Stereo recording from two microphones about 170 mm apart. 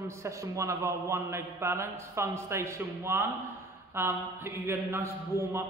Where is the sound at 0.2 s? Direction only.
15° right (ahead or behind).